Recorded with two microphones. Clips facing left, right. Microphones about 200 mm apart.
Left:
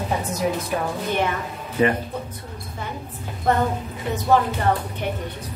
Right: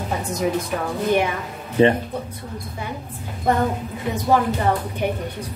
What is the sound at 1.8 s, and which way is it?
Speech, 30° right (ahead or behind).